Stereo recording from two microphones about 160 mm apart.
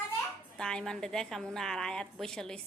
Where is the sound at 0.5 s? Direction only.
5° left (ahead or behind).